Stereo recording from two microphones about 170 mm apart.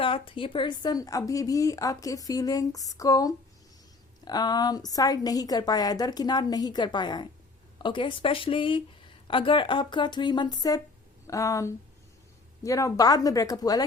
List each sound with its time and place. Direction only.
0.0 s a woman's voice: 30° left (ahead or behind)